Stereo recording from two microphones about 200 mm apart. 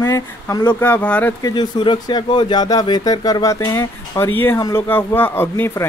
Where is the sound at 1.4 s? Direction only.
20° left (ahead or behind).